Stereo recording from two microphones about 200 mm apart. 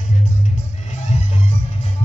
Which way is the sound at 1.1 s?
30° left (ahead or behind).